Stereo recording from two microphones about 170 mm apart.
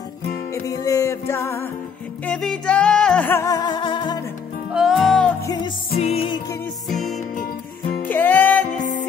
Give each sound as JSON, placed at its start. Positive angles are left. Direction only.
{"t": 0.7, "sound": "music", "side_deg": 20}
{"t": 4.7, "sound": "music", "side_deg": 0}
{"t": 5.4, "sound": "music", "side_deg": 20}
{"t": 5.9, "sound": "music", "side_deg": 35}
{"t": 6.9, "sound": "music", "side_deg": 0}
{"t": 8.7, "sound": "music", "side_deg": 50}